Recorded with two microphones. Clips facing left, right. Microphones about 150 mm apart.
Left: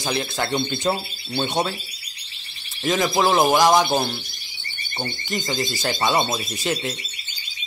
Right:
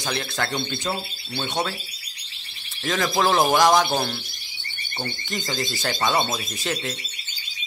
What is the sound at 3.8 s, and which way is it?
A man's voice, 20° left (ahead or behind).